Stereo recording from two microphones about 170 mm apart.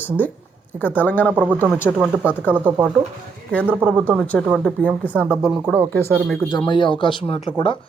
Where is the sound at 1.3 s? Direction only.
10° right (ahead or behind).